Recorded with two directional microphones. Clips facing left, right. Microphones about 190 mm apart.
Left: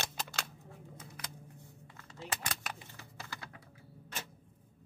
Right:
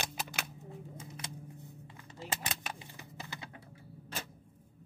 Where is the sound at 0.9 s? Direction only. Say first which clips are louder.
Right 3 dB; 25° right (ahead or behind).